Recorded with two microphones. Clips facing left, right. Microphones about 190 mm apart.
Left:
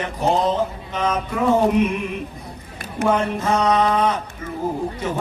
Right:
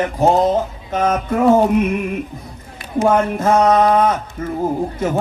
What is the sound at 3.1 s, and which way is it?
Chant, 50° right (ahead or behind).